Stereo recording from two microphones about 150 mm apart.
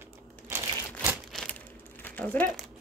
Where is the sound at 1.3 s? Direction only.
5° left (ahead or behind).